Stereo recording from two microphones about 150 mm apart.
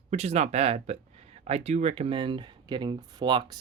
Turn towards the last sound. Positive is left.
turn(degrees=-30)  # may be behind; listen again after turning